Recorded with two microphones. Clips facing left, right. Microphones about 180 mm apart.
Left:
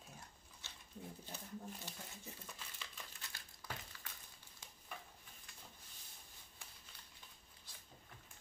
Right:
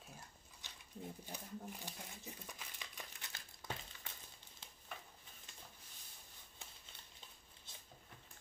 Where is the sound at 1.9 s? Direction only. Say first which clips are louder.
Right 1 dB; 15° right (ahead or behind).